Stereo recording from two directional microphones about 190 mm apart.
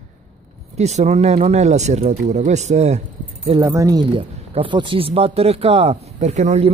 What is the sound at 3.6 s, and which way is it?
Speech, 15° right (ahead or behind).